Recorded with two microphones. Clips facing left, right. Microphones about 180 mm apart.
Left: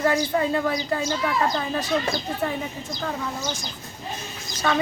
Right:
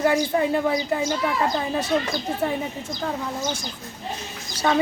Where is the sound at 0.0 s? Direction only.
20° right (ahead or behind).